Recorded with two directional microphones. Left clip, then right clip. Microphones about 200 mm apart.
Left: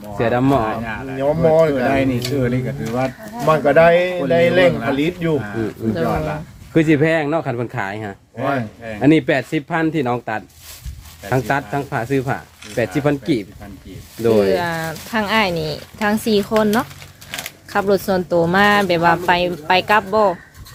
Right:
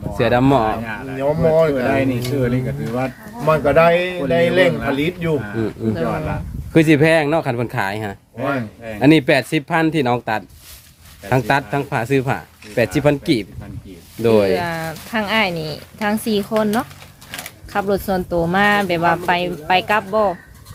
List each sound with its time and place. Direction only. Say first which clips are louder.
0.2 s a man's voice: right 2 dB; 50° right (ahead or behind)
0.8 s speech: left 1 dB; 5° left (ahead or behind)
1.2 s a man's voice: left 1 dB; 15° right (ahead or behind)
1.7 s speech: left 1 dB; 5° left (ahead or behind)
3.4 s a man's voice: left 1 dB; 15° right (ahead or behind)
5.4 s speech: even; 5° left (ahead or behind)
6.7 s a man's voice: right 2 dB; 50° right (ahead or behind)
8.4 s speech: left 1 dB; 5° left (ahead or behind)
9.0 s a man's voice: right 2 dB; 50° right (ahead or behind)
14.5 s speech: left 1 dB; 5° left (ahead or behind)
17.7 s speech: left 2 dB; 10° left (ahead or behind)